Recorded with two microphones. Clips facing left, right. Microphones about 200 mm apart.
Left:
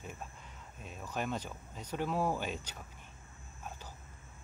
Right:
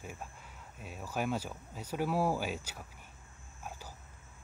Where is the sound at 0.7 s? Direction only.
5° right (ahead or behind).